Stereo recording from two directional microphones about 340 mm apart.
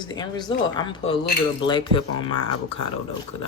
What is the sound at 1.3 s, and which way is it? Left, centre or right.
Speech, left.